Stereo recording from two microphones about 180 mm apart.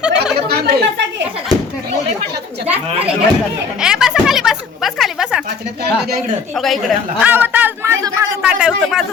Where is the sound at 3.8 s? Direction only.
5° right (ahead or behind).